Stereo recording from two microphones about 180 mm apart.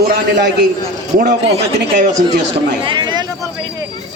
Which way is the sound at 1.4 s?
35° right (ahead or behind).